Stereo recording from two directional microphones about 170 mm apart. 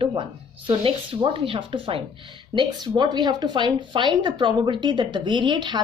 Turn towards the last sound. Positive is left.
turn(degrees=-25)  # may be behind; listen again after turning